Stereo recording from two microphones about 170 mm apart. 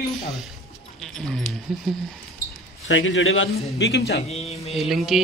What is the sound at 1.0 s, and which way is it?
Speech, centre (ahead or behind).